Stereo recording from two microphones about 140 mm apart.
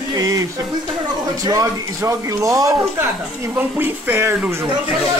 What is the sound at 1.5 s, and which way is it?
Speech, 25° right (ahead or behind).